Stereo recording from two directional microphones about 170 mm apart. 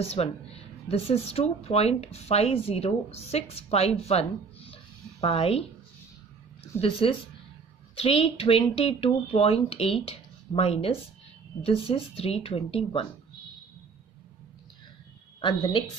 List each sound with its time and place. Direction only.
0.0 s speech: 35° left (ahead or behind)
6.8 s speech: 35° left (ahead or behind)